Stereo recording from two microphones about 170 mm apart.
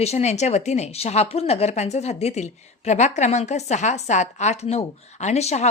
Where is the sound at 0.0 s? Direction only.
40° left (ahead or behind).